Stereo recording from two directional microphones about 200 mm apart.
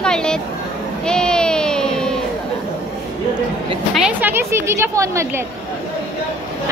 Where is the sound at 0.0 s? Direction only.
5° left (ahead or behind).